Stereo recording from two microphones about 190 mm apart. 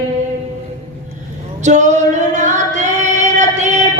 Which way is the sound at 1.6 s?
40° right (ahead or behind).